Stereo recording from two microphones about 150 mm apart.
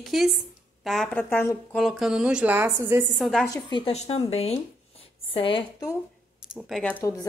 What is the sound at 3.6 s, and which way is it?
A woman's voice, 35° left (ahead or behind).